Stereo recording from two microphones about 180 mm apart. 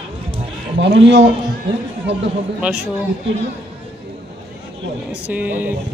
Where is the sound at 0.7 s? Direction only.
85° right.